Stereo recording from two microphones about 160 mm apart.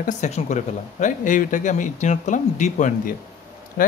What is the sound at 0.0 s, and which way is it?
A man's voice, 45° left (ahead or behind).